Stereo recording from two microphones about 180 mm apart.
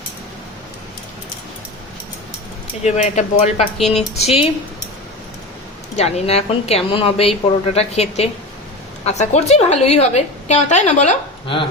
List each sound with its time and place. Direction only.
2.8 s a woman's voice: 40° left (ahead or behind)
6.0 s a woman's voice: 35° left (ahead or behind)